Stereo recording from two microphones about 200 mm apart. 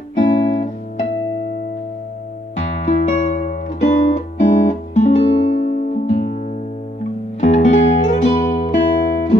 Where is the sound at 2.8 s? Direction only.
40° left (ahead or behind).